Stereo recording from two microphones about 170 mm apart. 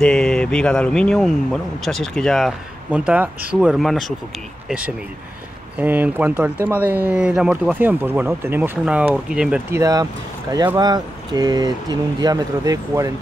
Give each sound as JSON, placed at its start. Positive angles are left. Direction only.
{"t": 0.0, "sound": "speech", "side_deg": 5}
{"t": 9.8, "sound": "speech", "side_deg": -20}